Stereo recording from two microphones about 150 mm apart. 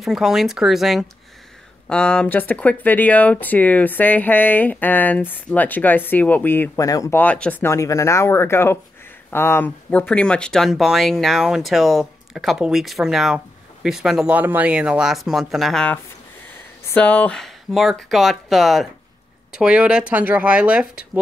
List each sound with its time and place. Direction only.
0.0 s speech: centre (ahead or behind); by 7.2 s 25° left (ahead or behind)
7.2 s speech: 10° left (ahead or behind); by 21.0 s 10° right (ahead or behind)